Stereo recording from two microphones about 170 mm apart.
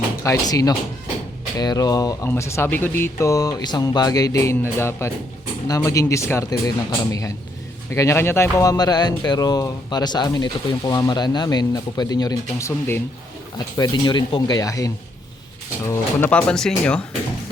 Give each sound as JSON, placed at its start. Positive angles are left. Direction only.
{"t": 0.2, "sound": "speech", "side_deg": 20}
{"t": 15.9, "sound": "speech", "side_deg": 10}